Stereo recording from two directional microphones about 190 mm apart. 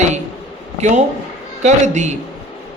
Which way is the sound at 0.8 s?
40° right (ahead or behind).